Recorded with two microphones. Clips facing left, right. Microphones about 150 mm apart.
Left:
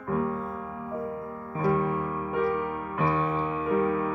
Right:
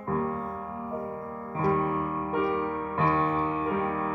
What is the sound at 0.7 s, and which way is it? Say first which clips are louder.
Music: left 1 dB; 25° right (ahead or behind).